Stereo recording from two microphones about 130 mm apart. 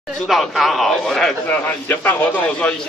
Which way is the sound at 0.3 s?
Centre (ahead or behind).